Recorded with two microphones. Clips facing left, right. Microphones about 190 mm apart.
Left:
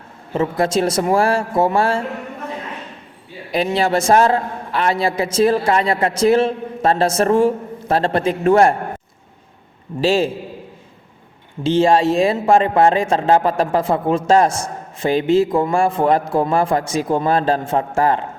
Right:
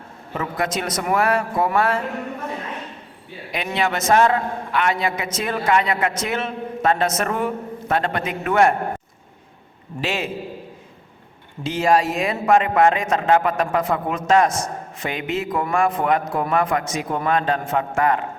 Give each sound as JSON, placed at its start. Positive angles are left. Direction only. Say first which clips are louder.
{"t": 0.3, "sound": "speech", "louder": "left 7 dB", "side_deg": 30}
{"t": 3.5, "sound": "a man's voice", "louder": "left 6 dB", "side_deg": 35}
{"t": 10.0, "sound": "a man's voice", "louder": "left 9 dB", "side_deg": 30}
{"t": 11.6, "sound": "speech", "louder": "left 5 dB", "side_deg": 30}